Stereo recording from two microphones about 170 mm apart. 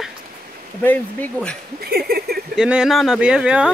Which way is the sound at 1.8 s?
65° right (ahead or behind).